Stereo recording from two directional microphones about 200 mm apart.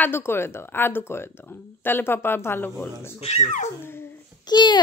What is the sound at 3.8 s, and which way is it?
Babbling, 10° left (ahead or behind).